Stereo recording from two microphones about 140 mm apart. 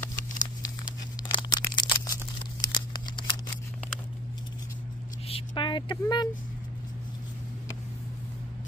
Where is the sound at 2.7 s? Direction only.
30° left (ahead or behind).